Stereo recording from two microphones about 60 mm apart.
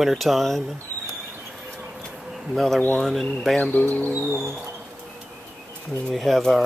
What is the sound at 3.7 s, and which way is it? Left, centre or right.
Speech, left.